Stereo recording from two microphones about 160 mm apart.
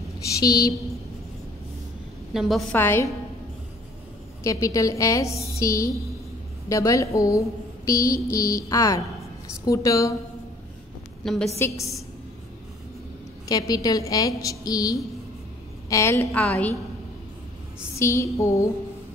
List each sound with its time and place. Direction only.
0.4 s speech: 25° left (ahead or behind)
2.3 s a woman's voice: centre (ahead or behind)
2.7 s a woman's voice: 15° left (ahead or behind)
4.4 s speech: 20° left (ahead or behind)
11.2 s a woman's voice: centre (ahead or behind)
13.5 s a woman's voice: 25° left (ahead or behind)
17.9 s a woman's voice: 15° left (ahead or behind)